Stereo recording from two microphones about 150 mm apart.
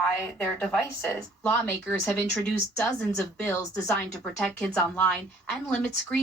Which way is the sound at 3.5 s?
20° left (ahead or behind).